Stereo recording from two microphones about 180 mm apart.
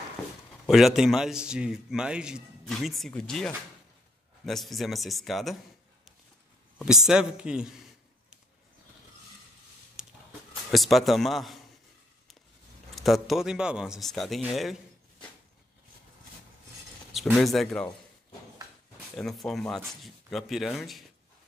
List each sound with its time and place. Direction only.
0.7 s a man's voice: centre (ahead or behind)
6.8 s a man's voice: 5° right (ahead or behind)
10.0 s a sound: 5° right (ahead or behind)
10.7 s a man's voice: centre (ahead or behind)
12.9 s a man's voice: centre (ahead or behind)
17.1 s a man's voice: centre (ahead or behind)
19.1 s a man's voice: centre (ahead or behind)